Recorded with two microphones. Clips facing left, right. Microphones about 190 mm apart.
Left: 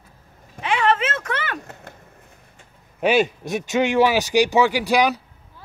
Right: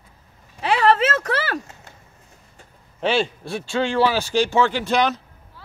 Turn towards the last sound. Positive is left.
turn(degrees=15)  # may be behind; listen again after turning